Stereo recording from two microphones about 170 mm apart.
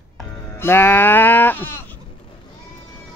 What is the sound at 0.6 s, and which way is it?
Speech, 15° left (ahead or behind).